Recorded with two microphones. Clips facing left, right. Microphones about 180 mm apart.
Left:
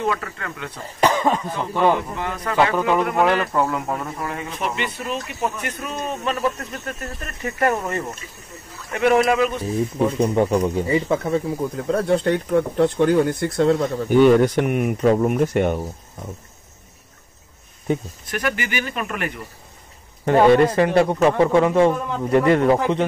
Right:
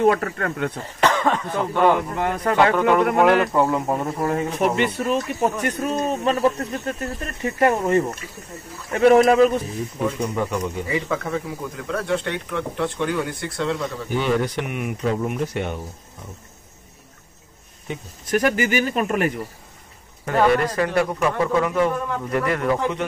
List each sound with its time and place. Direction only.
0.0 s speech: 50° right (ahead or behind)
1.0 s speech: 10° left (ahead or behind)
2.1 s speech: 50° right (ahead or behind)
2.7 s speech: 5° left (ahead or behind)
3.7 s speech: 20° right (ahead or behind)
4.2 s speech: 40° right (ahead or behind)
9.9 s speech: 30° left (ahead or behind); by 15.8 s 50° left (ahead or behind)
18.3 s speech: 40° right (ahead or behind)
20.2 s speech: 25° left (ahead or behind)